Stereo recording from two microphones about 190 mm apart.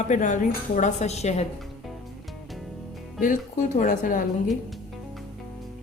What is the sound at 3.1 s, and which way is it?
Speech, 45° left (ahead or behind).